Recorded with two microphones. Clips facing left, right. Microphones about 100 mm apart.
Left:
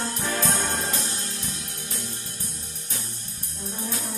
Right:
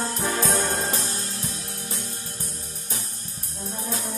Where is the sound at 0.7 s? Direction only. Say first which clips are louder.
Right 2 dB; 35° right (ahead or behind).